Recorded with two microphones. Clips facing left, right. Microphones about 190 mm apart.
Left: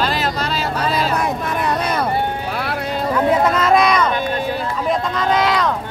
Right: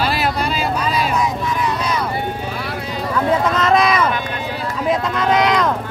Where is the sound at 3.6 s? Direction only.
Centre (ahead or behind).